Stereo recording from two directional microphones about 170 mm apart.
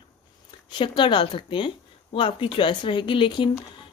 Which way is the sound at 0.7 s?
30° left (ahead or behind).